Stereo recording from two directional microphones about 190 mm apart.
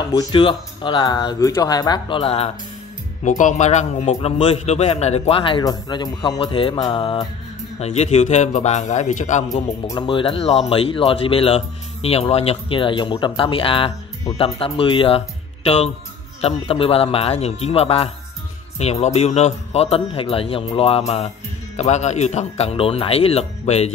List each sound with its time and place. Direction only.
0.0 s speech: 20° left (ahead or behind)
3.3 s a man's voice: 40° left (ahead or behind)
9.8 s a man's voice: 25° left (ahead or behind)